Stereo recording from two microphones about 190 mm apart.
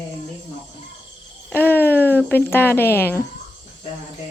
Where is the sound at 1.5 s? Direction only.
10° left (ahead or behind).